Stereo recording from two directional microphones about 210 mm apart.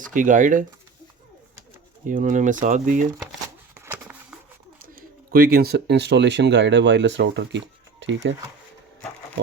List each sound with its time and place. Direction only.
0.1 s speech: 40° right (ahead or behind)
2.0 s speech: 40° right (ahead or behind)
3.8 s a sound: 10° right (ahead or behind)
4.9 s speech: 45° right (ahead or behind)